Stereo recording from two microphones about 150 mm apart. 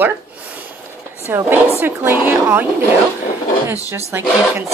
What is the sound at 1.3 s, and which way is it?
Speech, 15° right (ahead or behind).